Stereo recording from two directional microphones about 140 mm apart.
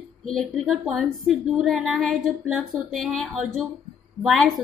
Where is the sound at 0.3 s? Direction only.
Centre (ahead or behind).